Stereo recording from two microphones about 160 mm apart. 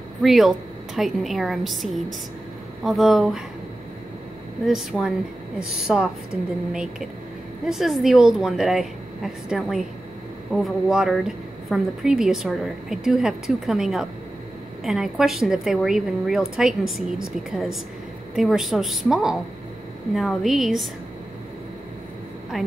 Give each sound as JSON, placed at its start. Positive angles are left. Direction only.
{"t": 0.2, "sound": "a woman's voice", "side_deg": 0}
{"t": 4.6, "sound": "a woman's voice", "side_deg": 0}
{"t": 7.6, "sound": "a woman's voice", "side_deg": 0}
{"t": 22.5, "sound": "a woman's voice", "side_deg": 0}